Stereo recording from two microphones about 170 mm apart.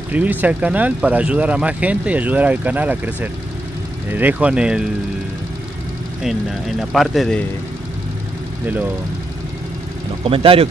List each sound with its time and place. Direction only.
0.1 s speech: 10° right (ahead or behind)
6.8 s speech: centre (ahead or behind)
10.2 s speech: 35° right (ahead or behind)